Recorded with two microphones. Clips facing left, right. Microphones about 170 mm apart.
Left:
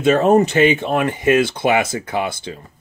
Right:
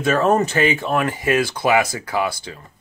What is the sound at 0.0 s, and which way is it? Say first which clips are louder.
Speech: left 4 dB; 20° left (ahead or behind).